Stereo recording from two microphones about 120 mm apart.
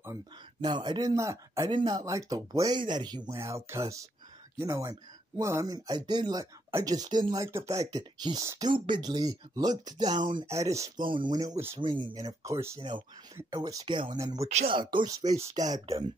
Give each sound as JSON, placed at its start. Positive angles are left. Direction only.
{"t": 0.6, "sound": "speech", "side_deg": -40}
{"t": 1.1, "sound": "speech", "side_deg": -25}
{"t": 1.7, "sound": "speech", "side_deg": -35}
{"t": 3.3, "sound": "speech", "side_deg": -25}
{"t": 10.4, "sound": "speech", "side_deg": -25}
{"t": 11.0, "sound": "speech", "side_deg": -40}
{"t": 14.7, "sound": "speech", "side_deg": -40}